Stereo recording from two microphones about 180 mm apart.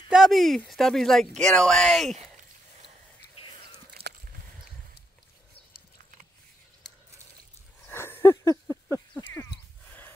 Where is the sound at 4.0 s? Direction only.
35° right (ahead or behind).